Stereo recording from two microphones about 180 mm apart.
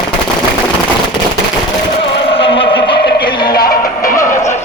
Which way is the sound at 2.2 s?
30° left (ahead or behind).